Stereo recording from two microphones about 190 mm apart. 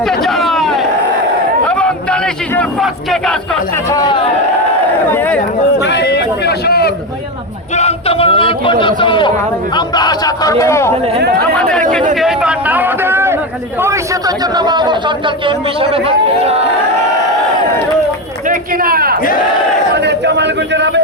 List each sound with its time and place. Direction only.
0.0 s a sound: centre (ahead or behind)
3.8 s speech: 20° left (ahead or behind)
5.8 s speech: 65° left (ahead or behind)
7.8 s a sound: 30° left (ahead or behind)
9.7 s speech: 20° left (ahead or behind); by 11.8 s 5° left (ahead or behind)
12.1 s a sound: 5° right (ahead or behind)
13.8 s a man's voice: 15° right (ahead or behind); by 16.6 s 35° right (ahead or behind)
18.4 s speech: 50° right (ahead or behind)
20.0 s a man's voice: 65° right (ahead or behind)